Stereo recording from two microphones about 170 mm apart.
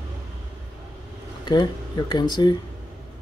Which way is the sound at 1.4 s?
25° left (ahead or behind).